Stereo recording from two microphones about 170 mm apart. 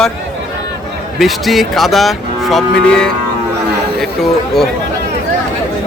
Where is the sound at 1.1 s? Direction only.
Centre (ahead or behind).